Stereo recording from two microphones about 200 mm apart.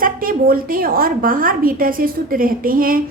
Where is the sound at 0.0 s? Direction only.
45° right (ahead or behind).